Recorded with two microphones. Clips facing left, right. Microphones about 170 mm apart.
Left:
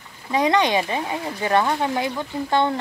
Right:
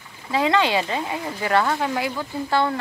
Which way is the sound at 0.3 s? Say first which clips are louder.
Left 1 dB; 20° left (ahead or behind).